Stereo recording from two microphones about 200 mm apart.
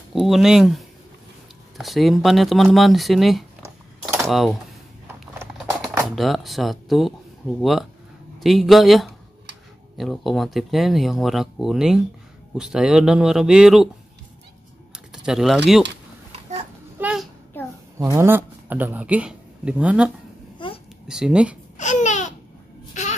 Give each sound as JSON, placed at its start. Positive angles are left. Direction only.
{"t": 0.1, "sound": "speech", "side_deg": 0}
{"t": 5.2, "sound": "a sound", "side_deg": -5}
{"t": 6.0, "sound": "speech", "side_deg": 0}
{"t": 15.2, "sound": "speech", "side_deg": 0}
{"t": 17.0, "sound": "a sound", "side_deg": -5}
{"t": 17.9, "sound": "a man's voice", "side_deg": -15}
{"t": 20.5, "sound": "babbling", "side_deg": 25}
{"t": 21.1, "sound": "speech", "side_deg": -5}
{"t": 21.7, "sound": "a sound", "side_deg": 35}